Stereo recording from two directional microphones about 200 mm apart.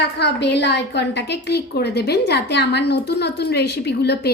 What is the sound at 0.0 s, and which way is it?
A woman's voice, 60° left (ahead or behind).